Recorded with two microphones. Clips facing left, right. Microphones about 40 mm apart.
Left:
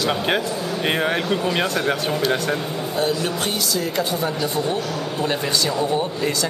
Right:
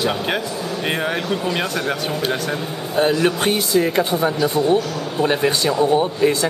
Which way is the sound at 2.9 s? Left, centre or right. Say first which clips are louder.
Right 6 dB; right.